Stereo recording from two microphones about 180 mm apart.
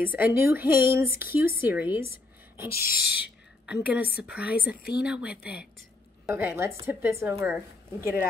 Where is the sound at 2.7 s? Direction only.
55° left (ahead or behind).